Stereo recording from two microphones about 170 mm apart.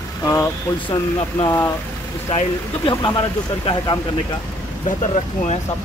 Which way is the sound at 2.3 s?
30° left (ahead or behind).